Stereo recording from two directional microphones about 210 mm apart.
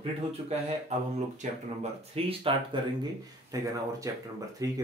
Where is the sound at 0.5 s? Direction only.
30° right (ahead or behind).